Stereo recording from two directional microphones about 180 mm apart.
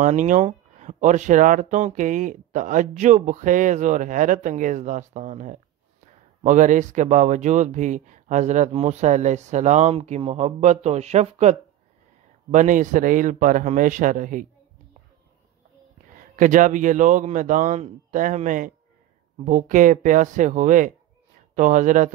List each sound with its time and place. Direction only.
0.0 s speech: 45° right (ahead or behind)
16.2 s speech: 45° right (ahead or behind)